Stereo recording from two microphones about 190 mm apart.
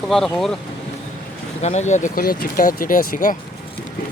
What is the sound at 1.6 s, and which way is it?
Speech, 35° left (ahead or behind).